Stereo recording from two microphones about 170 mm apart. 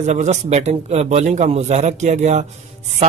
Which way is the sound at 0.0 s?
45° right (ahead or behind).